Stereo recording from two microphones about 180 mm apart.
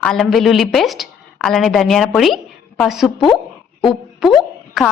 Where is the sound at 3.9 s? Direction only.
Centre (ahead or behind).